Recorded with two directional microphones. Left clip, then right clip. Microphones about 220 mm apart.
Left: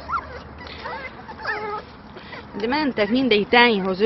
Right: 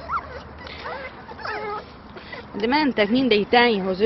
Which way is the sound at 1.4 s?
35° right (ahead or behind).